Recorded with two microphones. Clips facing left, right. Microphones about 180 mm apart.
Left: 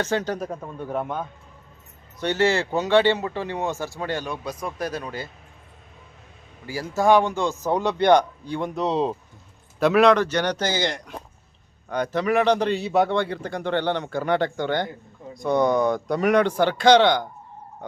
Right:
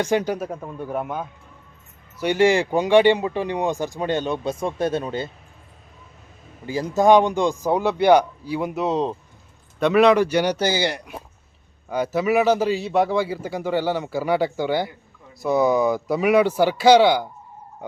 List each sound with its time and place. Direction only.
0.0 s speech: 15° right (ahead or behind)
6.7 s a man's voice: 20° right (ahead or behind)